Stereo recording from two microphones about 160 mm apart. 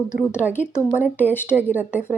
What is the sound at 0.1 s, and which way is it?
Speech, 15° left (ahead or behind).